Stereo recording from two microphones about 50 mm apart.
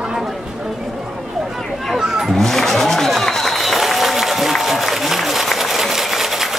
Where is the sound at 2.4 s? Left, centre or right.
Centre.